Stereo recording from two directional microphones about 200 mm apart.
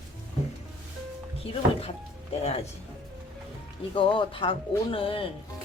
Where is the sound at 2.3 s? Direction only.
30° left (ahead or behind).